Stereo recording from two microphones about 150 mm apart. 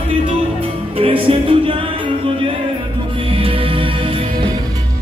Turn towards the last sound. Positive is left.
turn(degrees=-35)  # may be behind; listen again after turning